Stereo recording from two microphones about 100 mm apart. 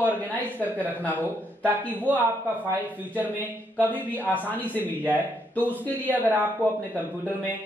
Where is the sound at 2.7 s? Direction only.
15° right (ahead or behind).